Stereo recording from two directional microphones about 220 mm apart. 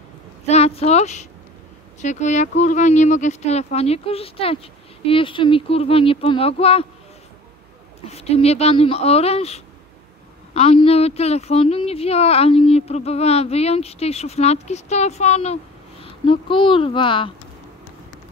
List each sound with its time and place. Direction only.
0.5 s a woman's voice: 30° left (ahead or behind)
8.0 s a woman's voice: 30° left (ahead or behind)